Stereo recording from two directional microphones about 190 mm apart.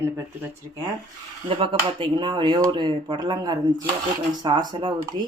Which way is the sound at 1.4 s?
30° right (ahead or behind).